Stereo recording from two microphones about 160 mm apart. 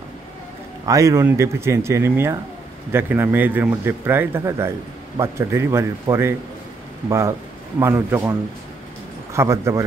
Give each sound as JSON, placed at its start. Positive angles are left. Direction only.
{"t": 0.8, "sound": "a man's voice", "side_deg": -20}